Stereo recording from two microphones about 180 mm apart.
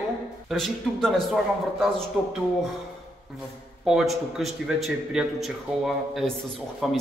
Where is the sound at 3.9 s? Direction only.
Centre (ahead or behind).